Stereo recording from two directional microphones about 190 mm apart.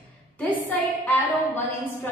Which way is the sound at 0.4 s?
10° left (ahead or behind).